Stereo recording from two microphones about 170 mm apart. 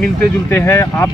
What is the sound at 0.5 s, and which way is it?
Speech, 15° left (ahead or behind).